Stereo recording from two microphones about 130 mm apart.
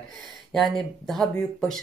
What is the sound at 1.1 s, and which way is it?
Speech, centre (ahead or behind).